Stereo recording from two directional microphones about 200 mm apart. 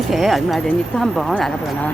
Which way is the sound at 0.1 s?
Centre (ahead or behind).